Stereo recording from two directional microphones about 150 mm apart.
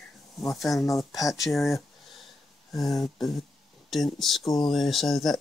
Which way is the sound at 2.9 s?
Centre (ahead or behind).